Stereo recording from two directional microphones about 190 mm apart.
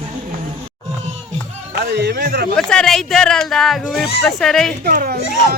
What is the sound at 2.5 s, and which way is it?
Speech, centre (ahead or behind).